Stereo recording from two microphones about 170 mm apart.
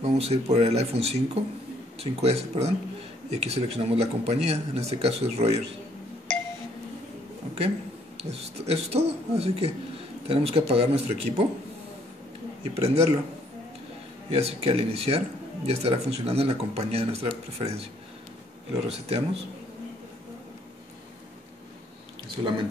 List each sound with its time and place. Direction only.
0.0 s speech: 40° right (ahead or behind)
6.3 s a sound: 5° left (ahead or behind)
8.2 s speech: 40° right (ahead or behind)
12.6 s speech: 35° right (ahead or behind)
14.3 s speech: 35° right (ahead or behind)
18.9 s speech: 35° right (ahead or behind)
22.4 s speech: 20° right (ahead or behind)